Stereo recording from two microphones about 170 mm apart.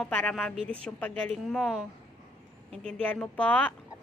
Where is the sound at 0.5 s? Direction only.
35° right (ahead or behind).